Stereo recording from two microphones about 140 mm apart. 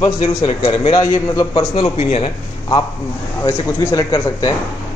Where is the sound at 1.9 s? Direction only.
45° left (ahead or behind).